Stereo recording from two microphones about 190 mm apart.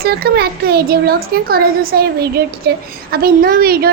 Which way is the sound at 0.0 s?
55° right (ahead or behind).